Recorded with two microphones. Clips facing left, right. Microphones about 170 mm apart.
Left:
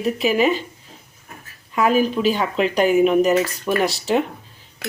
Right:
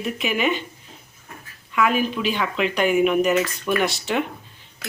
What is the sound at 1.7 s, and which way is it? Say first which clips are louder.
Speech: left 3 dB; 40° left (ahead or behind).